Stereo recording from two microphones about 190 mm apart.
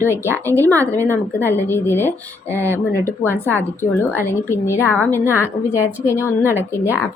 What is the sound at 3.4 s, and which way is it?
A woman's voice, 10° left (ahead or behind).